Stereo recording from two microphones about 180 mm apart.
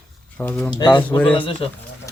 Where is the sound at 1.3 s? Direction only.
30° left (ahead or behind).